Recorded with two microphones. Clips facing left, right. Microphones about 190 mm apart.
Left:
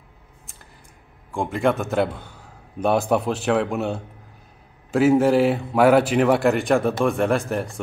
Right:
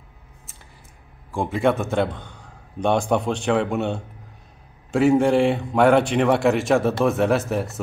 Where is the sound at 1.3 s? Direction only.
Centre (ahead or behind).